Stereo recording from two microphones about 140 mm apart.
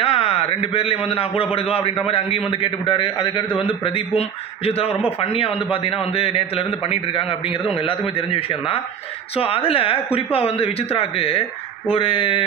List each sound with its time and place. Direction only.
0.0 s a man's voice: 45° left (ahead or behind)